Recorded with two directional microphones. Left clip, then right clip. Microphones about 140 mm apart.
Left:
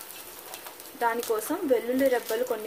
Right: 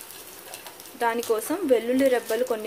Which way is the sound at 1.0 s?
25° right (ahead or behind).